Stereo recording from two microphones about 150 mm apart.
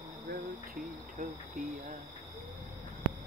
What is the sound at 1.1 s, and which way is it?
Cricket, 60° right (ahead or behind).